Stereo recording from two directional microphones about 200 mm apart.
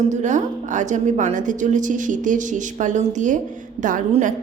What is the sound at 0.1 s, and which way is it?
A woman's voice, 35° right (ahead or behind).